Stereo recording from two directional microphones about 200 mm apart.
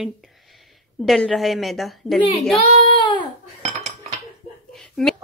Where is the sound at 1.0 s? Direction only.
Centre (ahead or behind).